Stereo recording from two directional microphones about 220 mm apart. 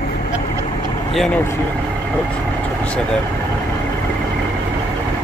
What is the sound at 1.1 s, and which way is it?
Speech, centre (ahead or behind).